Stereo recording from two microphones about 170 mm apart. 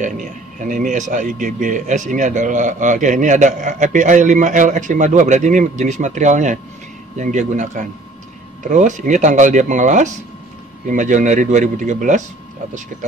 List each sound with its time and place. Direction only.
0.0 s speech: 50° right (ahead or behind)